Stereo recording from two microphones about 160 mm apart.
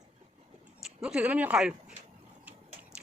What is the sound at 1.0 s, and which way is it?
Speech, 5° right (ahead or behind).